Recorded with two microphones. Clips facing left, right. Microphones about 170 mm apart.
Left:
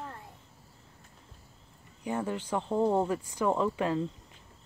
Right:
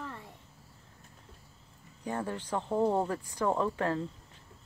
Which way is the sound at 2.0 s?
15° left (ahead or behind).